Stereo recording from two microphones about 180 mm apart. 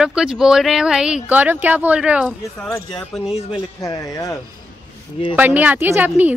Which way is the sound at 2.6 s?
10° left (ahead or behind).